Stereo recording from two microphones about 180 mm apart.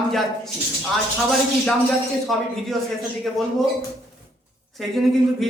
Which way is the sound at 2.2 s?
Centre (ahead or behind).